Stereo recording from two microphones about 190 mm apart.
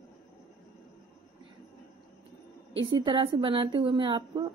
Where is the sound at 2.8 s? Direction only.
25° right (ahead or behind).